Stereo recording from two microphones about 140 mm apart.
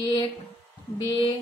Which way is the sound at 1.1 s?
35° left (ahead or behind).